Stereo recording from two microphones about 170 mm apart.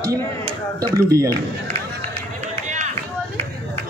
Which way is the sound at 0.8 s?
20° right (ahead or behind).